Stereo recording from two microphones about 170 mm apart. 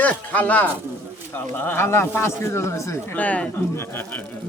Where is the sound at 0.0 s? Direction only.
10° left (ahead or behind).